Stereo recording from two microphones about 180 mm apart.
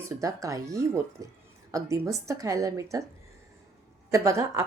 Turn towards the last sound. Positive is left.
turn(degrees=-15)  # may be behind; listen again after turning